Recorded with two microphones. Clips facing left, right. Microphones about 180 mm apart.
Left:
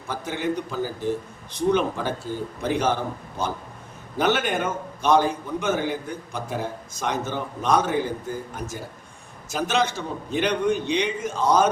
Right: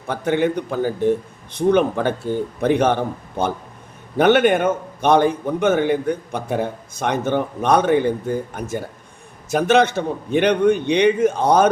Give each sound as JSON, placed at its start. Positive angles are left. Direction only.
{"t": 0.1, "sound": "a man's voice", "side_deg": -60}